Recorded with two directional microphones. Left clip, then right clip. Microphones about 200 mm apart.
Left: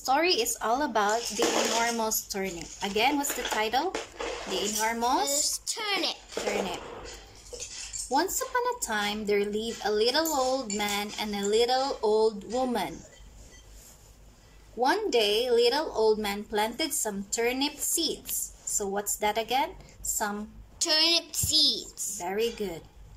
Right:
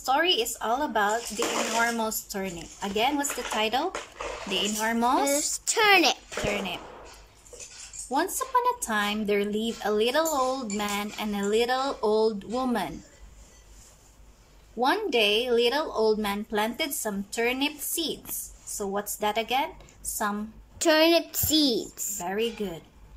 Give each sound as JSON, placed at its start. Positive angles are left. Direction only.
{"t": 0.1, "sound": "a woman's voice", "side_deg": 5}
{"t": 5.3, "sound": "a woman's voice", "side_deg": -45}
{"t": 8.1, "sound": "a woman's voice", "side_deg": 0}
{"t": 14.8, "sound": "a woman's voice", "side_deg": 0}
{"t": 20.8, "sound": "a woman's voice", "side_deg": -40}
{"t": 22.2, "sound": "a woman's voice", "side_deg": 0}